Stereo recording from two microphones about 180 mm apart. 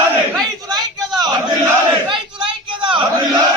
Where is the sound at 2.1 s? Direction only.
25° right (ahead or behind).